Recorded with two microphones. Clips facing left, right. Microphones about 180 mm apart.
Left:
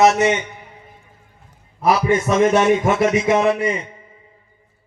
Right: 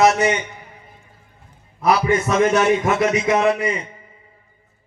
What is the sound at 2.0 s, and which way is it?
A man's voice, 25° left (ahead or behind).